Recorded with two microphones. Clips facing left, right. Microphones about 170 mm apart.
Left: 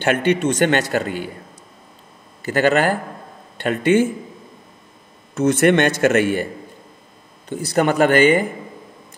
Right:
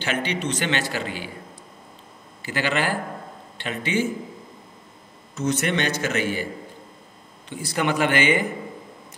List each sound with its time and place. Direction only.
0.0 s a man's voice: 55° left (ahead or behind)
2.4 s a man's voice: 45° left (ahead or behind)
5.3 s a man's voice: 55° left (ahead or behind)
7.4 s a man's voice: 40° left (ahead or behind)